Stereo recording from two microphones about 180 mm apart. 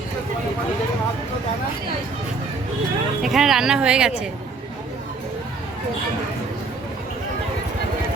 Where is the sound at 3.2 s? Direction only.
Centre (ahead or behind).